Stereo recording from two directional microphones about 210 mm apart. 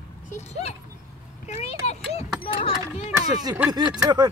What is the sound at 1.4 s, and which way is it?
Vehicle, 30° left (ahead or behind).